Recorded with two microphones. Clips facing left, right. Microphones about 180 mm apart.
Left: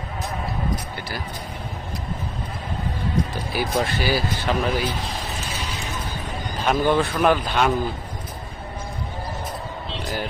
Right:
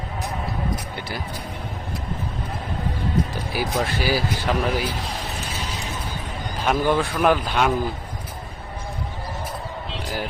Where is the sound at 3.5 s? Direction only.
5° right (ahead or behind).